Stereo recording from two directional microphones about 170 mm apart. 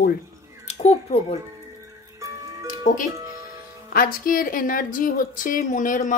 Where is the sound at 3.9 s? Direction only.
55° left (ahead or behind).